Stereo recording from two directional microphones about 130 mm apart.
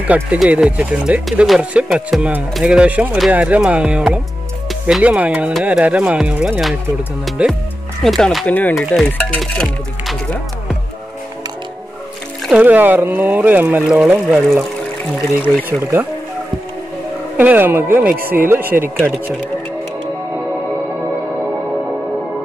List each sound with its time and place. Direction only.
0.0 s speech: 10° right (ahead or behind)
8.5 s speech: 15° left (ahead or behind)
9.4 s music: centre (ahead or behind)
12.4 s speech: 10° right (ahead or behind)
15.8 s speech: 20° right (ahead or behind)
17.4 s speech: 15° right (ahead or behind)